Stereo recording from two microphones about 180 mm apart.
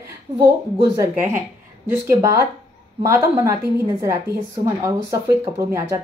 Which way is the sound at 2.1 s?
15° right (ahead or behind).